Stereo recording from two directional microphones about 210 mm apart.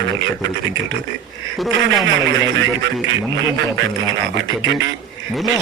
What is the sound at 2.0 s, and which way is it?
A man's voice, 60° right (ahead or behind).